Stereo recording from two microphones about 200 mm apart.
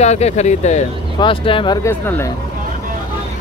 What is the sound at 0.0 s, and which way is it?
Speech, 35° left (ahead or behind).